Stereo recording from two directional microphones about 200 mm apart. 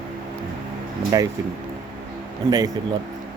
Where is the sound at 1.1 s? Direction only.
15° right (ahead or behind).